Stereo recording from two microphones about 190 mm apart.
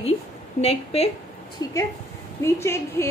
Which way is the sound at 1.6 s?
20° left (ahead or behind).